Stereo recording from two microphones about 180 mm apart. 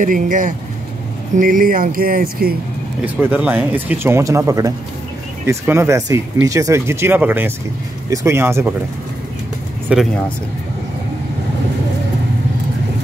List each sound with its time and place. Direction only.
0.0 s speech: 50° right (ahead or behind)
3.2 s speech: 10° right (ahead or behind)
9.8 s speech: centre (ahead or behind)